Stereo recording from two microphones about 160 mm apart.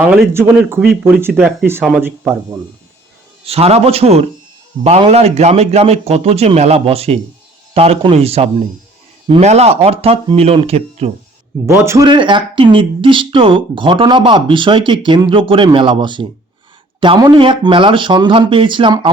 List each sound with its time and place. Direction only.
0.1 s speech: 10° right (ahead or behind)
3.4 s speech: 40° right (ahead or behind)
11.6 s speech: 15° right (ahead or behind)
12.0 s speech: 30° right (ahead or behind)